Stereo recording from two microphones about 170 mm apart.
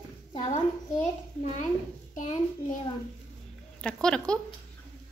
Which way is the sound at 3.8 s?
5° left (ahead or behind).